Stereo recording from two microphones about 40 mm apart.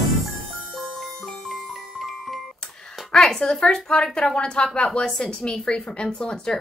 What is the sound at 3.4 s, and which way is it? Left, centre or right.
A woman's voice, centre.